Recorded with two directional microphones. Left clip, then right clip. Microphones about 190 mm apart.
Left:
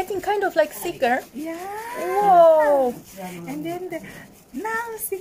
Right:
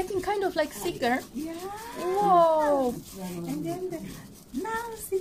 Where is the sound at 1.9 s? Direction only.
35° left (ahead or behind).